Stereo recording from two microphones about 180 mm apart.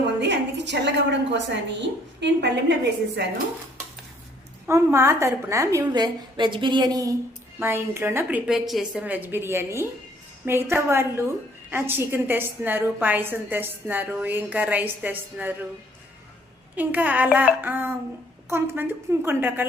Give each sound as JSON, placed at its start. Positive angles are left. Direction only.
{"t": 0.2, "sound": "a woman's voice", "side_deg": -75}
{"t": 4.6, "sound": "a woman's voice", "side_deg": -15}
{"t": 16.7, "sound": "a woman's voice", "side_deg": -10}